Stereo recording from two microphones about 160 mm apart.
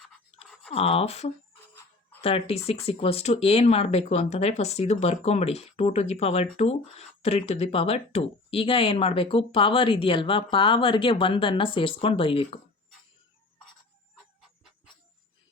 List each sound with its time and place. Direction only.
0.7 s speech: 40° left (ahead or behind)
14.4 s jingle bell: centre (ahead or behind)